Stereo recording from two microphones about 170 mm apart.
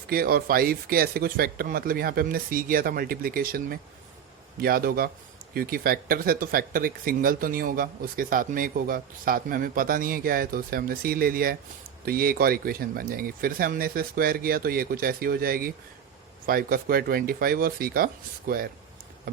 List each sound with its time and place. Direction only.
0.1 s speech: 60° right (ahead or behind)